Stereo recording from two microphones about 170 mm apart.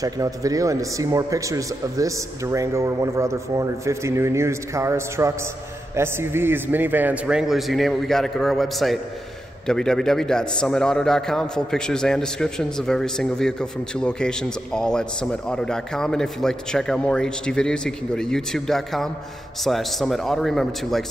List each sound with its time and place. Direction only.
0.0 s a man's voice: 20° right (ahead or behind); by 21.0 s centre (ahead or behind)